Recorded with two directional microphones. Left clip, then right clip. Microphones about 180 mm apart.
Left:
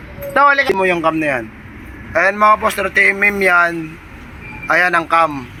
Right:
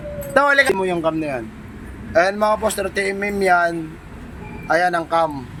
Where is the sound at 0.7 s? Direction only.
5° right (ahead or behind).